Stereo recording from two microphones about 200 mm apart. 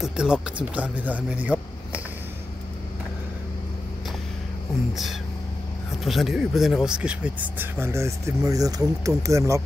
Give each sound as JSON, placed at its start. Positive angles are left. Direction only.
{"t": 0.0, "sound": "speech", "side_deg": -5}
{"t": 6.0, "sound": "speech", "side_deg": 0}